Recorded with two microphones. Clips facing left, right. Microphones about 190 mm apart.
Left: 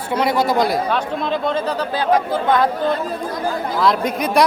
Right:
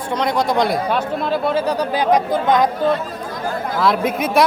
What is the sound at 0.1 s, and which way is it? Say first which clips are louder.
Speech: left 1 dB; 5° left (ahead or behind).